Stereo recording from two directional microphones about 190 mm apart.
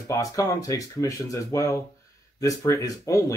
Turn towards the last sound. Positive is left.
turn(degrees=15)  # may be behind; listen again after turning